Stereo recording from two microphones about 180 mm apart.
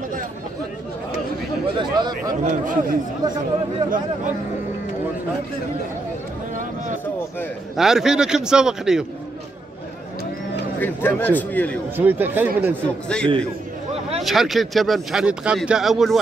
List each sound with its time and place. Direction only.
1.8 s chatter: 25° right (ahead or behind)
2.4 s a man's voice: 45° right (ahead or behind)
7.7 s speech: centre (ahead or behind)
10.8 s a man's voice: 10° left (ahead or behind)
12.0 s speech: 10° right (ahead or behind)
12.8 s speech: 5° left (ahead or behind)